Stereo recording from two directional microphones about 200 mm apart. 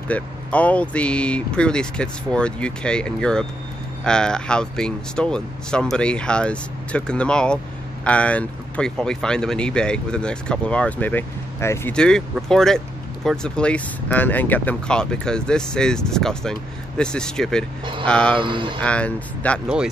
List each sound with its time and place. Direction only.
0.1 s speech: 5° left (ahead or behind)
18.3 s speech: 25° right (ahead or behind)
18.8 s speech: 5° left (ahead or behind)